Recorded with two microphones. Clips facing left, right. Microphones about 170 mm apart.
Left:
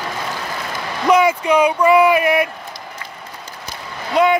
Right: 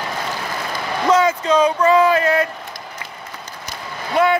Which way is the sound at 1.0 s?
15° left (ahead or behind).